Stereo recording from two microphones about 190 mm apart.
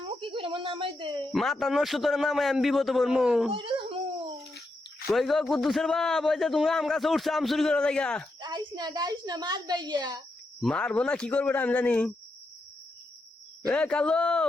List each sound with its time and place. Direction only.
0.2 s a sound: 25° right (ahead or behind)
1.3 s a man's voice: centre (ahead or behind)
3.5 s wail: 30° right (ahead or behind)
5.1 s a man's voice: centre (ahead or behind)
8.4 s a woman's voice: 20° right (ahead or behind)
10.6 s a man's voice: 5° left (ahead or behind)
13.7 s a man's voice: 5° left (ahead or behind)